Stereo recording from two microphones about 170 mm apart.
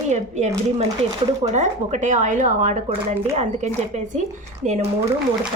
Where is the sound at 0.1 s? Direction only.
40° right (ahead or behind).